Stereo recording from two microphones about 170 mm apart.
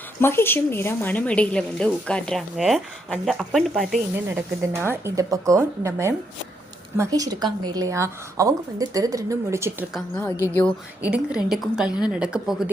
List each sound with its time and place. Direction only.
0.2 s a woman's voice: 15° left (ahead or behind)
4.4 s a woman's voice: 15° right (ahead or behind)
11.0 s speech: 5° right (ahead or behind)